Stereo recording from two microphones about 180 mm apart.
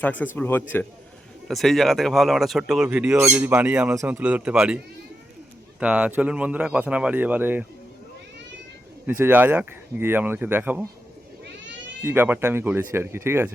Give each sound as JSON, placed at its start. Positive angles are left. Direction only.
{"t": 0.0, "sound": "speech", "side_deg": 10}
{"t": 5.8, "sound": "speech", "side_deg": -5}
{"t": 9.0, "sound": "speech", "side_deg": -10}
{"t": 12.0, "sound": "speech", "side_deg": -10}